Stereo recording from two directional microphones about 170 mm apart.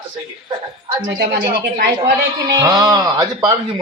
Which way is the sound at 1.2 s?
70° right (ahead or behind).